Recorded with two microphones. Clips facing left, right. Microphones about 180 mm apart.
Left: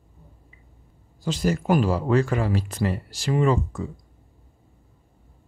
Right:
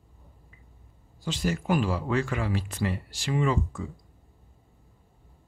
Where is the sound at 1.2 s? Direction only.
40° left (ahead or behind).